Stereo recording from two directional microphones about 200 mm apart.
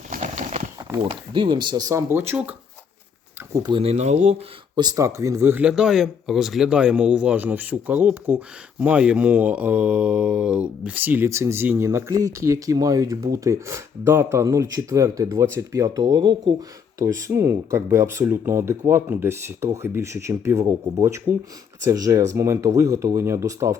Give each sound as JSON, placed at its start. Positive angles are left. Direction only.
{"t": 0.1, "sound": "horse", "side_deg": -40}
{"t": 1.0, "sound": "speech", "side_deg": -25}
{"t": 3.5, "sound": "speech", "side_deg": -20}
{"t": 4.7, "sound": "speech", "side_deg": -20}